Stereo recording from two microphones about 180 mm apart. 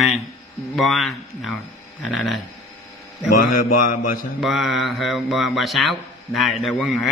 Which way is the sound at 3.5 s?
50° left (ahead or behind).